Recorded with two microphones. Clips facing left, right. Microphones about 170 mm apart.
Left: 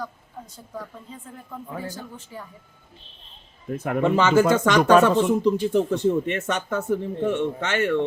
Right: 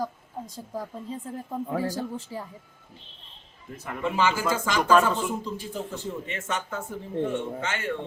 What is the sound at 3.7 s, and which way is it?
Speech, 60° left (ahead or behind).